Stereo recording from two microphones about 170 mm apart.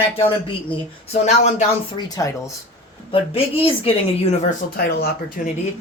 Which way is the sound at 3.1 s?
35° left (ahead or behind).